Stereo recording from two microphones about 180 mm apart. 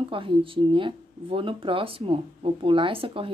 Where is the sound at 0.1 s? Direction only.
30° right (ahead or behind).